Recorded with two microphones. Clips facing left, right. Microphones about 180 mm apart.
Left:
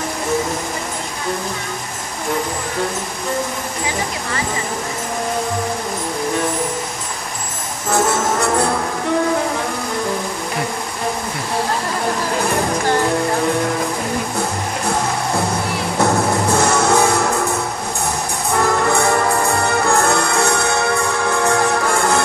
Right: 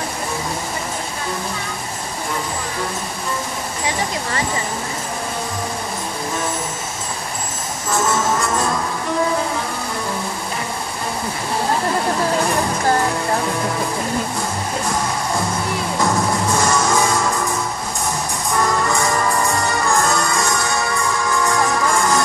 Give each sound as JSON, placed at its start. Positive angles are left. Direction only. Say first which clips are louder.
{"t": 7.9, "sound": "music", "louder": "left 2 dB", "side_deg": 65}
{"t": 16.5, "sound": "music", "louder": "left 3 dB", "side_deg": 65}
{"t": 18.6, "sound": "music", "louder": "left 3 dB", "side_deg": 65}